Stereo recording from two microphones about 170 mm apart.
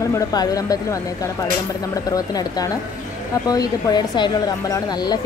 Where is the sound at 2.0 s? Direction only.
20° left (ahead or behind).